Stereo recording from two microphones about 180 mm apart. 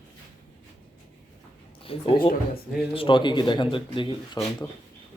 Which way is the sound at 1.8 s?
30° left (ahead or behind).